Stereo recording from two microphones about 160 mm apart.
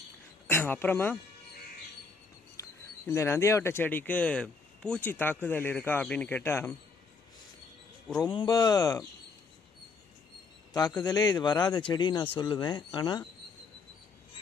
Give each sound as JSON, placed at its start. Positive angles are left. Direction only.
{"t": 0.5, "sound": "speech", "side_deg": 15}
{"t": 2.6, "sound": "a sound", "side_deg": 20}
{"t": 3.1, "sound": "speech", "side_deg": 15}
{"t": 8.2, "sound": "speech", "side_deg": 30}
{"t": 10.7, "sound": "speech", "side_deg": 25}